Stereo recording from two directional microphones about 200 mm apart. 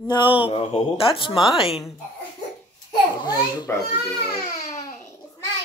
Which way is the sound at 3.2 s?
20° left (ahead or behind).